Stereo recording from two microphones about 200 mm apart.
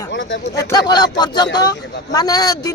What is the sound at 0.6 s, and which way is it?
Speech, 20° left (ahead or behind).